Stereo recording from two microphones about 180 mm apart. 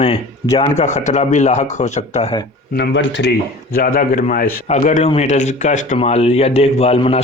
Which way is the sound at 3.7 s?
55° left (ahead or behind).